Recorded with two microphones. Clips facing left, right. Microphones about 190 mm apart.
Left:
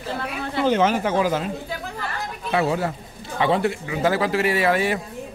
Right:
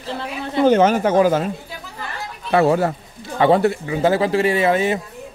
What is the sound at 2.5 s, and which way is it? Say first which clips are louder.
A man's voice: right 6 dB; 50° right (ahead or behind).